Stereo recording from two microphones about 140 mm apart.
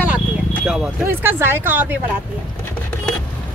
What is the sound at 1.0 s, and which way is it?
Speech, 15° right (ahead or behind).